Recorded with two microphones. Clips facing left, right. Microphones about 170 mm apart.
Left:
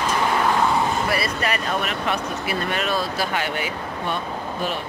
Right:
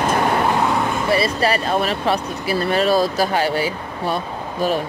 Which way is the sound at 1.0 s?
30° right (ahead or behind).